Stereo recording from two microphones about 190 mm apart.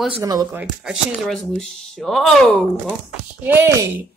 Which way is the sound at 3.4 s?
10° right (ahead or behind).